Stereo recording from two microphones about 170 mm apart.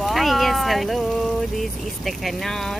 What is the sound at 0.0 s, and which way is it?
Speech, centre (ahead or behind).